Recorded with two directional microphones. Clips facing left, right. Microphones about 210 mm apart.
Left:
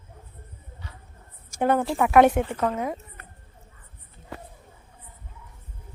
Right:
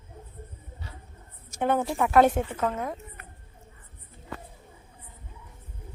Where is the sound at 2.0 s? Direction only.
70° left (ahead or behind).